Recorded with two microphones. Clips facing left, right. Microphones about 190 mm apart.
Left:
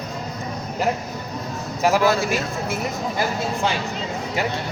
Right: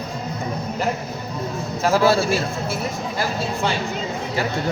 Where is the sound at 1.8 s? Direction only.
15° left (ahead or behind).